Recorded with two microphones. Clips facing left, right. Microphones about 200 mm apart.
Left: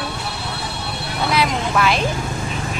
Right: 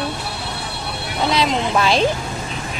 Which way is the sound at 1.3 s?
30° right (ahead or behind).